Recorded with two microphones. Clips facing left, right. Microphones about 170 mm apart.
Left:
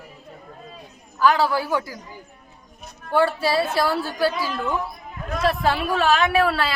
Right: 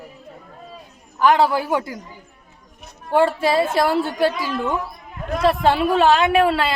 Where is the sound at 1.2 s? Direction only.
20° right (ahead or behind).